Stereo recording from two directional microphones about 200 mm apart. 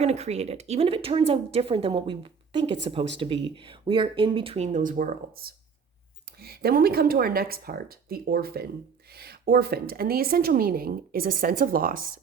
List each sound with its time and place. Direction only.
0.0 s a woman's voice: 30° right (ahead or behind)